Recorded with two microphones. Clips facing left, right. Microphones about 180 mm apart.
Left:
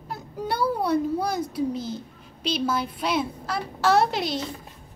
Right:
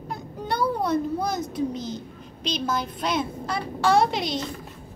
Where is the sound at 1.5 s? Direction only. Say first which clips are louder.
Left 1 dB; 5° left (ahead or behind).